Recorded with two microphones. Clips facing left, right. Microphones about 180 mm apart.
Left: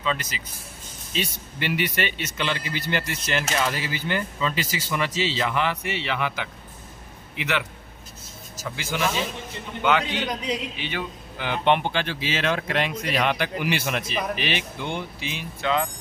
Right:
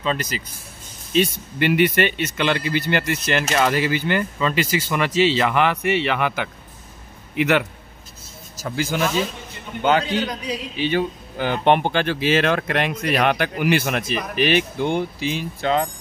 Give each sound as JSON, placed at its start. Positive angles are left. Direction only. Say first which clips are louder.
{"t": 0.0, "sound": "a man's voice", "louder": "right 4 dB", "side_deg": -40}
{"t": 1.1, "sound": "speech", "louder": "right 10 dB", "side_deg": -55}
{"t": 8.6, "sound": "a man's voice", "louder": "right 4 dB", "side_deg": -40}
{"t": 10.2, "sound": "a man's voice", "louder": "right 1 dB", "side_deg": 20}
{"t": 10.8, "sound": "speech", "louder": "right 10 dB", "side_deg": -35}